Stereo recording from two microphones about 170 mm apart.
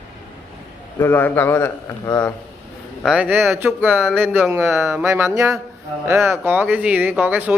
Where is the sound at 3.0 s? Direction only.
5° right (ahead or behind).